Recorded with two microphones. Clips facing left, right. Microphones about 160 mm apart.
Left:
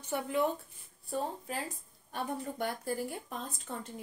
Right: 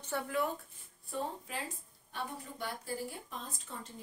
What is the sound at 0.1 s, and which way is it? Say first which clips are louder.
Speech: left 3 dB; 20° left (ahead or behind).